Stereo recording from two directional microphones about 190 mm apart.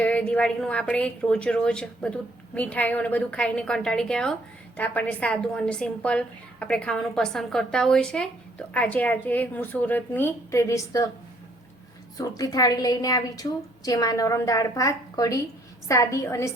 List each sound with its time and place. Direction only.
0.0 s a woman's voice: 10° left (ahead or behind)
12.1 s a woman's voice: 20° left (ahead or behind)